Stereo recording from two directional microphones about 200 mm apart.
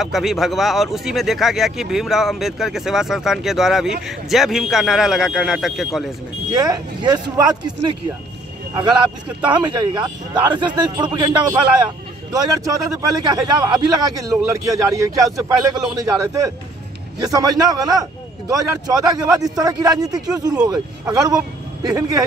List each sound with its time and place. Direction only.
0.0 s speech: centre (ahead or behind)
6.5 s a man's voice: 20° right (ahead or behind)
9.5 s a man's voice: 20° right (ahead or behind)